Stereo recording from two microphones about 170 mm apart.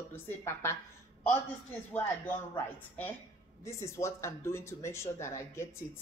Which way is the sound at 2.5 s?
10° left (ahead or behind).